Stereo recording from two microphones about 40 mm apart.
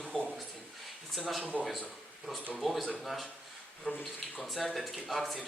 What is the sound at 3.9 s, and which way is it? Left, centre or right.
Speech, left.